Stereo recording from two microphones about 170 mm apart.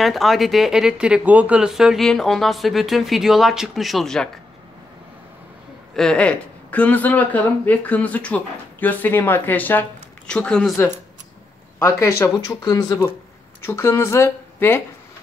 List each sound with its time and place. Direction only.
0.0 s speech: centre (ahead or behind)
5.9 s speech: 5° left (ahead or behind)
12.0 s speech: 15° left (ahead or behind)